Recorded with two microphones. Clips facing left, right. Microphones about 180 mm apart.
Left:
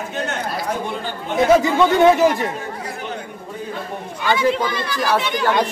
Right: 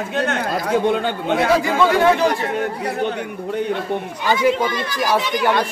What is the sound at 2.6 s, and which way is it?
Speech, 70° right (ahead or behind).